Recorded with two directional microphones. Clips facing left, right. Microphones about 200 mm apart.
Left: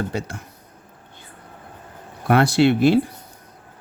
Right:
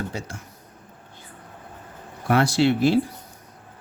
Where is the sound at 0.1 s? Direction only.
60° left (ahead or behind).